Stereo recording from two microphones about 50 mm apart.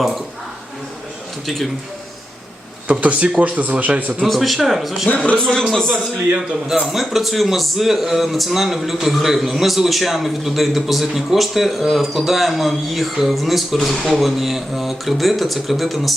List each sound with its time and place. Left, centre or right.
3.0 s speech: right
4.2 s a man's voice: centre
5.0 s a man's voice: left
5.4 s a man's voice: centre
6.9 s a man's voice: centre